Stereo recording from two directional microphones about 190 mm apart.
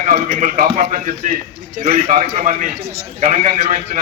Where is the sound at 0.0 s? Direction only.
40° right (ahead or behind).